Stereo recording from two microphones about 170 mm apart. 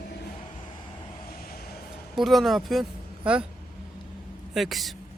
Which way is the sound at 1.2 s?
60° left (ahead or behind).